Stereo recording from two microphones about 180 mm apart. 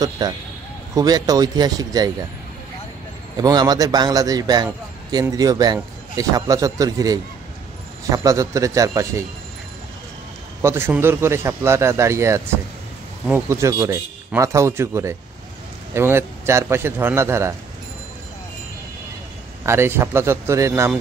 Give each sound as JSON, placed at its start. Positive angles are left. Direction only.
{"t": 0.9, "sound": "a man's voice", "side_deg": -20}
{"t": 3.3, "sound": "a man's voice", "side_deg": -20}
{"t": 10.6, "sound": "speech", "side_deg": -15}
{"t": 19.6, "sound": "speech", "side_deg": -15}